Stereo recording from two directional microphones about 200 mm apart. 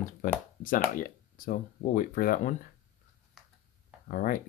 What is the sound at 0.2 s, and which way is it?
Speech, 40° left (ahead or behind).